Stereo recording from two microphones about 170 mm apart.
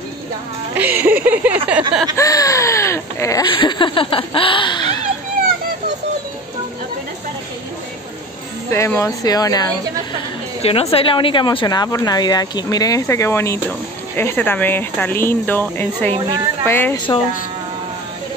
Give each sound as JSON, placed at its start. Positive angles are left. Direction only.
{"t": 0.7, "sound": "speech", "side_deg": -10}
{"t": 2.1, "sound": "speech", "side_deg": 20}
{"t": 8.6, "sound": "speech", "side_deg": 15}
{"t": 10.6, "sound": "speech", "side_deg": 35}